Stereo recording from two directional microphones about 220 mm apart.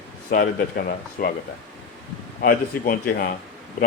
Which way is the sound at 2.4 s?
40° left (ahead or behind).